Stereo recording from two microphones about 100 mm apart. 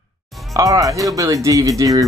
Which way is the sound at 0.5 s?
35° right (ahead or behind).